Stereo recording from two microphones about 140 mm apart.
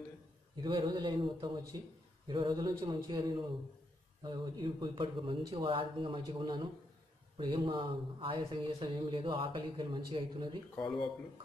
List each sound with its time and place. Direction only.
0.7 s speech: 35° right (ahead or behind)